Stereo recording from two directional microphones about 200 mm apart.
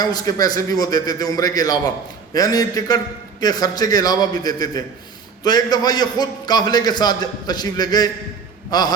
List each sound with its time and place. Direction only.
0.0 s a man's voice: 20° left (ahead or behind)